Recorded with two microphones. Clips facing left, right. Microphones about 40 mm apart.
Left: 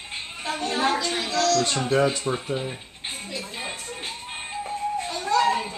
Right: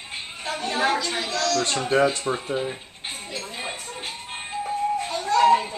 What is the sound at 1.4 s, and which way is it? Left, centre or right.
Speech, centre.